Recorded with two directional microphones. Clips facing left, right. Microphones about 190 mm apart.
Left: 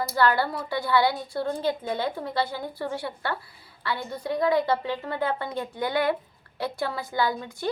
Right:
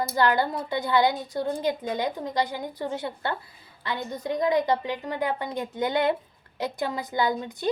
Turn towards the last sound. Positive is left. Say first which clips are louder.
# right 1 dB
turn(degrees=-20)  # may be behind; listen again after turning